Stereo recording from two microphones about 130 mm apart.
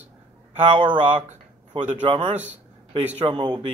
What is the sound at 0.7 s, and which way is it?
Speech, 40° right (ahead or behind).